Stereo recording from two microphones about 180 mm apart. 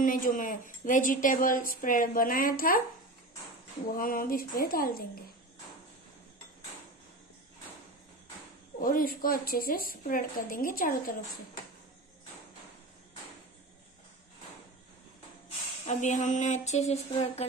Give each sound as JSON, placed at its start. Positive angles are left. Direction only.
{"t": 0.0, "sound": "a woman's voice", "side_deg": 50}
{"t": 3.9, "sound": "a woman's voice", "side_deg": 50}
{"t": 8.7, "sound": "a woman's voice", "side_deg": 50}
{"t": 15.9, "sound": "a sound", "side_deg": 45}